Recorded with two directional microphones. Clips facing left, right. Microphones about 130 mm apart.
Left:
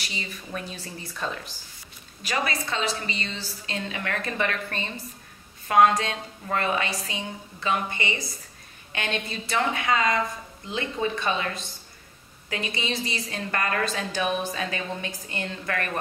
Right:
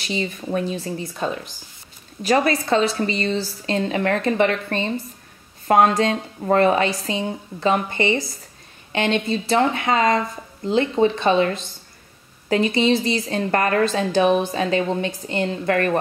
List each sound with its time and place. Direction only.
0.2 s speech: 35° right (ahead or behind)
2.2 s a woman's voice: 35° right (ahead or behind)